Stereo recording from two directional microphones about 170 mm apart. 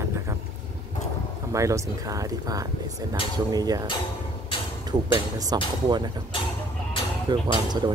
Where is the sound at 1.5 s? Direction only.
20° right (ahead or behind).